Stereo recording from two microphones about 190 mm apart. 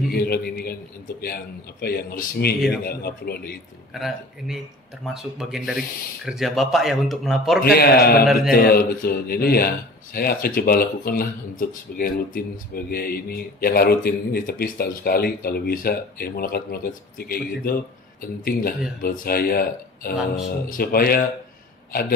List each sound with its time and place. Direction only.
0.1 s speech: 55° left (ahead or behind)
3.9 s speech: centre (ahead or behind)
7.6 s speech: 55° left (ahead or behind)